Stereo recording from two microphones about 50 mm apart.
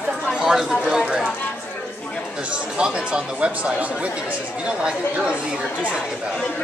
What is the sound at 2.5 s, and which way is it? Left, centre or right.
Speech, centre.